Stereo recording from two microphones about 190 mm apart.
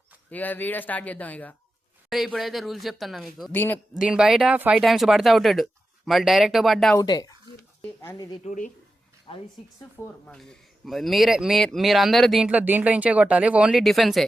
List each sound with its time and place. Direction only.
0.3 s speech: 10° left (ahead or behind)
6.9 s speech: 20° left (ahead or behind)
7.8 s a sound: 5° left (ahead or behind)
8.4 s speech: 40° left (ahead or behind)
9.3 s speech: 30° left (ahead or behind)
10.2 s speech: 5° left (ahead or behind)